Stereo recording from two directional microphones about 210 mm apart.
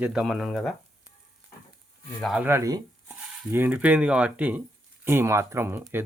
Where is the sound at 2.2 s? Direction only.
Centre (ahead or behind).